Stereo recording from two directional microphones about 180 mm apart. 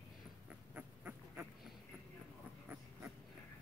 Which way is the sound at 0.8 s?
10° right (ahead or behind).